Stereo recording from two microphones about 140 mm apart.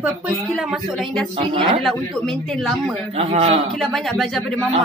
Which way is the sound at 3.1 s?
45° right (ahead or behind).